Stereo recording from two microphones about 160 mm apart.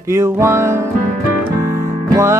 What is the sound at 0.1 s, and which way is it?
Music, 15° right (ahead or behind).